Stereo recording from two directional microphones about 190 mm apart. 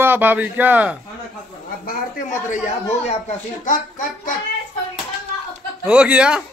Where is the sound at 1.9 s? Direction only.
45° left (ahead or behind).